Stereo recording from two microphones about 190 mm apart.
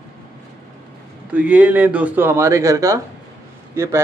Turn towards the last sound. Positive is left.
turn(degrees=-15)  # may be behind; listen again after turning